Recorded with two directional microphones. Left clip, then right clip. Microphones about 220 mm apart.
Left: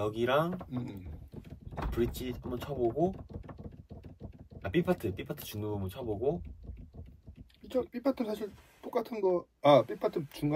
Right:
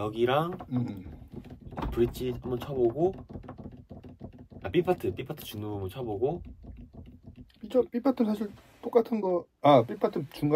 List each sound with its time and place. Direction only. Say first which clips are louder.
0.0 s speech: right 2 dB; centre (ahead or behind)
0.7 s speech: right 7 dB; 35° right (ahead or behind)
1.9 s speech: right 6 dB; centre (ahead or behind)
4.6 s speech: right 4 dB; centre (ahead or behind)
7.6 s speech: right 6 dB; 35° right (ahead or behind)